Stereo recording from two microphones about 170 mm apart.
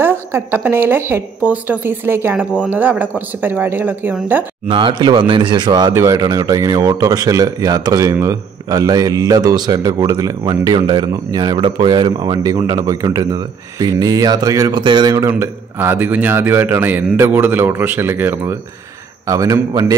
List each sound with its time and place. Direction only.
0.0 s a woman's voice: 10° right (ahead or behind)
4.6 s speech: 30° right (ahead or behind)